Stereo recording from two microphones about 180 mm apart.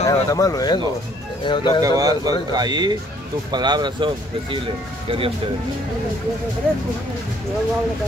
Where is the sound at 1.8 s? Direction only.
20° right (ahead or behind).